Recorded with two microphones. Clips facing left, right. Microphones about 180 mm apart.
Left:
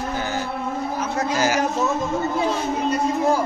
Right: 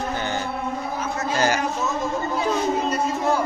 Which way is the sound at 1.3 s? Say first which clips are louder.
Even; 10° left (ahead or behind).